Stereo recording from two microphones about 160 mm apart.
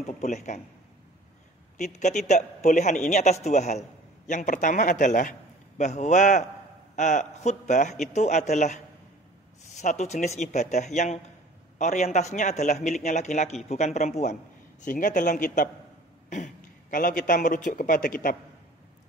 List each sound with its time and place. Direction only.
0.0 s a man's voice: 45° left (ahead or behind)
1.8 s a man's voice: 45° left (ahead or behind)